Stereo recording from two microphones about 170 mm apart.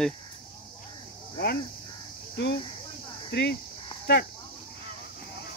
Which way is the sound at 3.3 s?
85° left.